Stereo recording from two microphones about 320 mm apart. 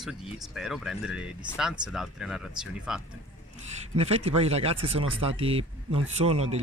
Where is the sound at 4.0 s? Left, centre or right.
Centre.